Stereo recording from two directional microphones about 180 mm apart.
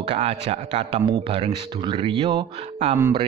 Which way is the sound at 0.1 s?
35° right (ahead or behind).